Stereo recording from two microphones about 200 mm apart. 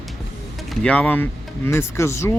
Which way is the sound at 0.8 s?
5° left (ahead or behind).